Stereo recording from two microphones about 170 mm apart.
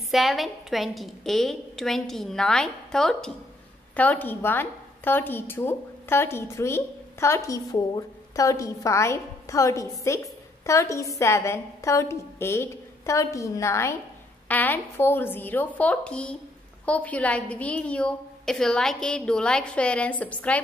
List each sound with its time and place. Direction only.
0.1 s a woman's voice: centre (ahead or behind)